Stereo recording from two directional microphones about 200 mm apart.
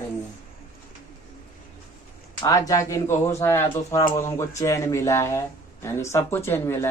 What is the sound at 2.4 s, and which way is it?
Speech, 15° left (ahead or behind).